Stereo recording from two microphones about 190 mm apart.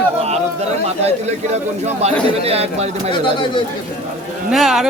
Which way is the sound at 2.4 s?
30° right (ahead or behind).